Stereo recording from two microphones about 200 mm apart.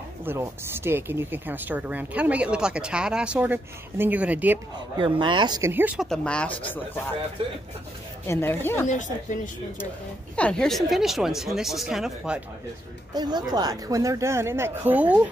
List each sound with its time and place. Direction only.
0.2 s speech: 10° right (ahead or behind)
4.7 s speech: 25° right (ahead or behind); by 6.0 s 10° right (ahead or behind)
6.0 s speech: 5° left (ahead or behind)
8.3 s speech: 10° left (ahead or behind)
8.8 s speech: 35° left (ahead or behind)
10.3 s speech: 5° left (ahead or behind)
13.1 s speech: 20° right (ahead or behind)